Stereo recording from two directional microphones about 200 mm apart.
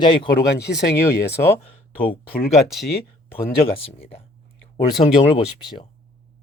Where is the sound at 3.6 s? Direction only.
30° left (ahead or behind).